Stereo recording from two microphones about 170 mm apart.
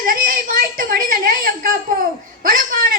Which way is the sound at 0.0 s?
55° right (ahead or behind).